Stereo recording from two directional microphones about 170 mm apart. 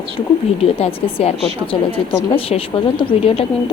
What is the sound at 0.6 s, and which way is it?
A woman's voice, 35° left (ahead or behind).